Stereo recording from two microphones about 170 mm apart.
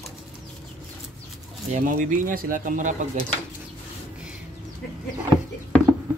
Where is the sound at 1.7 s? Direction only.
50° right (ahead or behind).